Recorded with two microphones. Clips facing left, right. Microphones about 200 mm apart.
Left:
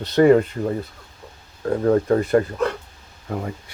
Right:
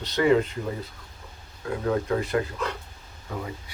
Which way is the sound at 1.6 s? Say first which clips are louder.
Left 8 dB; 45° left (ahead or behind).